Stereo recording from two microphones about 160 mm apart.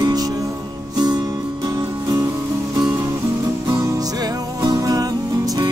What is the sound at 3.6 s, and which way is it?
Music, 20° right (ahead or behind).